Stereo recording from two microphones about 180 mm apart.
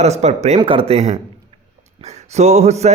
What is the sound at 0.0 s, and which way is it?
Mantra, 35° right (ahead or behind).